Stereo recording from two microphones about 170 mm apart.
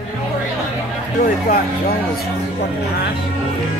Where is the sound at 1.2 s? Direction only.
60° left (ahead or behind).